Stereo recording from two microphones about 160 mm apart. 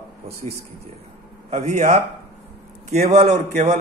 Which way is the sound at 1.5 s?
45° right (ahead or behind).